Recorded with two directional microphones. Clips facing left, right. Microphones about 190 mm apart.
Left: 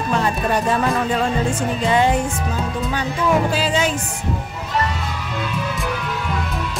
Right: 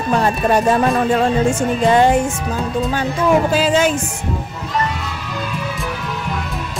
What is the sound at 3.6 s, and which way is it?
Speech, 50° right (ahead or behind).